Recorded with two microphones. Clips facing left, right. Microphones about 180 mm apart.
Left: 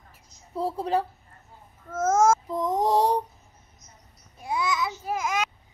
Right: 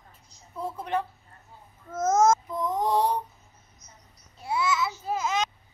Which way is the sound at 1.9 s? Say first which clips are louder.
Left 1 dB; 10° left (ahead or behind).